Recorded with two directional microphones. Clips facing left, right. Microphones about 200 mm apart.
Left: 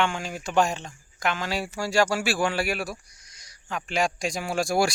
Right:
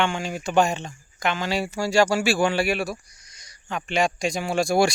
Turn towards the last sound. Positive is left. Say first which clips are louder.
# right 3 dB
turn(degrees=5)  # may be behind; listen again after turning